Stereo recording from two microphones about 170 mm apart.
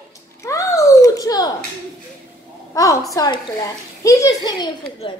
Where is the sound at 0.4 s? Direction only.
20° left (ahead or behind).